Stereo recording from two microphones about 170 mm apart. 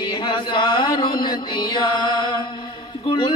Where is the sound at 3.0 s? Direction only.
30° left (ahead or behind).